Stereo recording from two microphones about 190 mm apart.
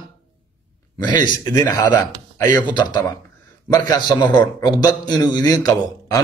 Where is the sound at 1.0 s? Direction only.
20° left (ahead or behind).